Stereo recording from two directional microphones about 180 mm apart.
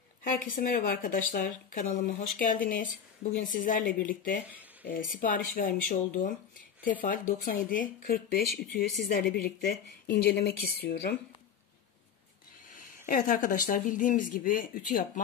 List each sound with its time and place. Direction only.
0.5 s speech: 50° left (ahead or behind)
12.7 s speech: 50° left (ahead or behind)